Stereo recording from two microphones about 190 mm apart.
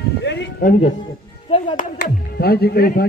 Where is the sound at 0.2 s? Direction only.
65° left (ahead or behind).